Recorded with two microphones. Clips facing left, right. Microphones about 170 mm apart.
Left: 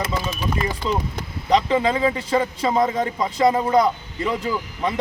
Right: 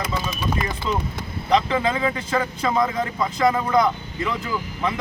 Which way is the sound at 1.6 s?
30° left (ahead or behind).